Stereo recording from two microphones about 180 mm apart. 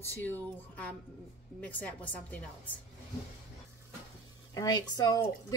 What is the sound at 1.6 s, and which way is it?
Speech, 10° left (ahead or behind).